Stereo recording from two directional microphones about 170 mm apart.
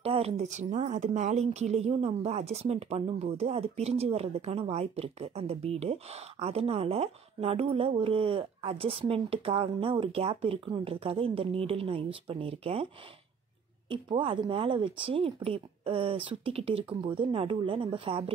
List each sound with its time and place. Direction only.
0.0 s speech: 35° right (ahead or behind)
13.8 s speech: 30° right (ahead or behind)